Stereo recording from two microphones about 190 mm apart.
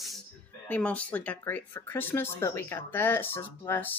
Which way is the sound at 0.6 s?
10° left (ahead or behind).